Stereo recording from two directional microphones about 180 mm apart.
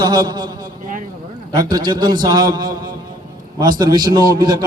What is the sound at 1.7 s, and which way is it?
A man's voice, 25° right (ahead or behind).